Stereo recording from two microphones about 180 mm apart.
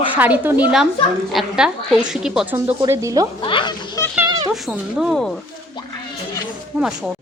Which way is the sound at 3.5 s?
25° left (ahead or behind).